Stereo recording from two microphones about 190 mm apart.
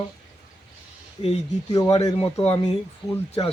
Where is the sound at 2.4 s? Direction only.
30° left (ahead or behind).